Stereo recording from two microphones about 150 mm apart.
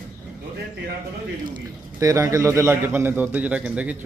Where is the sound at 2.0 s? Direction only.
20° right (ahead or behind).